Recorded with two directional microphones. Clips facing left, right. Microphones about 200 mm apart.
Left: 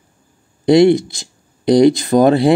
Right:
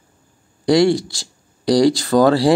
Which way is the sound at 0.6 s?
20° left (ahead or behind).